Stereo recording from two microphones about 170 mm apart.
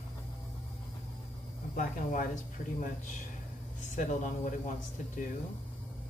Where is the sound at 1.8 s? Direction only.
50° left (ahead or behind).